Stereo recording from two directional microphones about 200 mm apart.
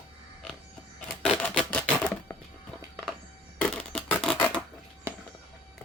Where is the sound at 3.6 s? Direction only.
5° left (ahead or behind).